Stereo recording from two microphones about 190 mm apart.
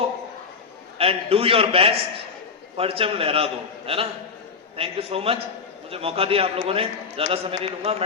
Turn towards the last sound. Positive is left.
turn(degrees=-30)  # may be behind; listen again after turning